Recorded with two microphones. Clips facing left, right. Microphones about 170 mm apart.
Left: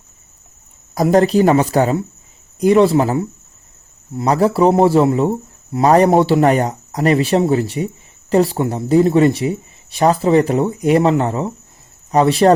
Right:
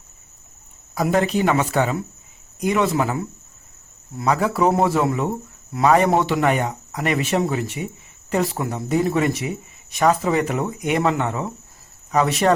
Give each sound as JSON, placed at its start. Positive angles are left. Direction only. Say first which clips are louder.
{"t": 0.9, "sound": "speech", "louder": "left 7 dB", "side_deg": 40}